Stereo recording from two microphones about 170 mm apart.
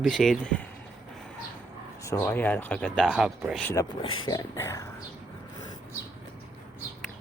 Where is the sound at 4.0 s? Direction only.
25° left (ahead or behind).